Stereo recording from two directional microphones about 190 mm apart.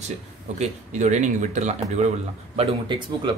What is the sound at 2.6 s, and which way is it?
Speech, 25° right (ahead or behind).